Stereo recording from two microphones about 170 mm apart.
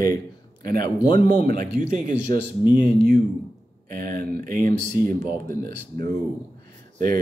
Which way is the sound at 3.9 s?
55° right (ahead or behind).